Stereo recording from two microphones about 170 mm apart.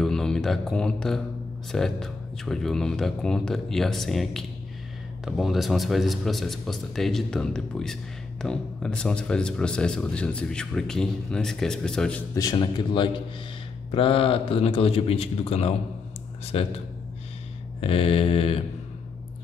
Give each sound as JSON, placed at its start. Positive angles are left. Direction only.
{"t": 0.0, "sound": "a man's voice", "side_deg": 5}
{"t": 12.4, "sound": "a man's voice", "side_deg": 25}
{"t": 17.7, "sound": "a man's voice", "side_deg": 35}